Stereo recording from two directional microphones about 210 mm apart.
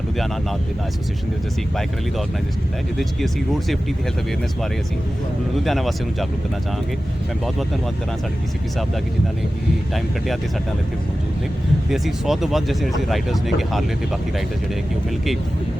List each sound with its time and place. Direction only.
5.6 s speech: centre (ahead or behind)
11.9 s speech: centre (ahead or behind)